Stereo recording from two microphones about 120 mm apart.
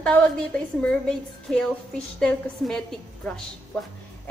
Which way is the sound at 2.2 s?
5° left (ahead or behind).